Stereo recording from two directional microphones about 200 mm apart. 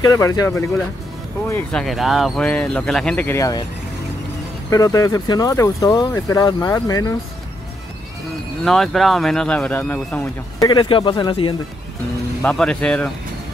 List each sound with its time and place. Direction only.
0.0 s speech: 15° left (ahead or behind)
1.5 s speech: 5° left (ahead or behind)
4.6 s speech: 15° left (ahead or behind)
8.6 s speech: centre (ahead or behind)
10.6 s speech: 20° left (ahead or behind)
12.4 s speech: 5° left (ahead or behind)